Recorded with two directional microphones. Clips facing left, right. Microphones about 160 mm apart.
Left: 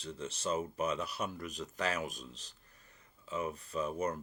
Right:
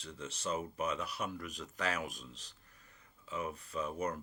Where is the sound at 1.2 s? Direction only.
30° left (ahead or behind).